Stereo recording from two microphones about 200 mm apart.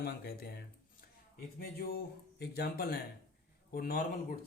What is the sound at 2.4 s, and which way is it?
Speech, 50° left (ahead or behind).